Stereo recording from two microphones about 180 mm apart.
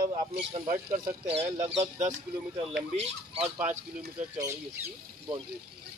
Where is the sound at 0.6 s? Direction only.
50° right (ahead or behind).